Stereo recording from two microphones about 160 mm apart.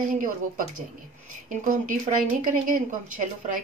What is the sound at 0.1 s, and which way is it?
A woman's voice, 55° right (ahead or behind).